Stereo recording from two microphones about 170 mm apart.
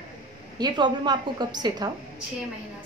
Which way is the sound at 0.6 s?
25° right (ahead or behind).